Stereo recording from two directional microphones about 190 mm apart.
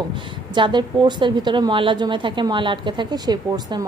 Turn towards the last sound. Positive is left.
turn(degrees=-20)  # may be behind; listen again after turning